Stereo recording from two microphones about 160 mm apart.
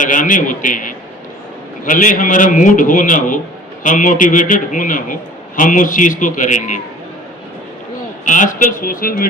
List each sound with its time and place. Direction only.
0.0 s a man's voice: 55° left (ahead or behind)
8.2 s a man's voice: 55° left (ahead or behind)